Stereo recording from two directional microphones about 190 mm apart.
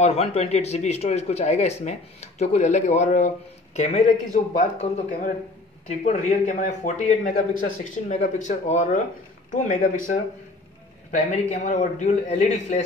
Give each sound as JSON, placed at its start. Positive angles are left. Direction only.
{"t": 0.0, "sound": "speech", "side_deg": 30}